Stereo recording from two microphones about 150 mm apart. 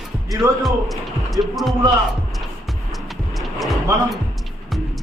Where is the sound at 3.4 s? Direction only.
Centre (ahead or behind).